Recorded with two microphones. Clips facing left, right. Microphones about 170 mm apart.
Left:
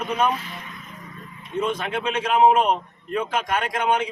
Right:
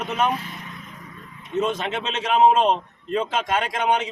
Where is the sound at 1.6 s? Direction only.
20° right (ahead or behind).